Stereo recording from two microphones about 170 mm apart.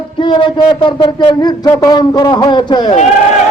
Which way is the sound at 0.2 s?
30° left (ahead or behind).